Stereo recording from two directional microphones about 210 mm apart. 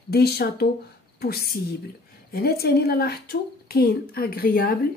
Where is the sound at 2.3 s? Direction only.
45° left (ahead or behind).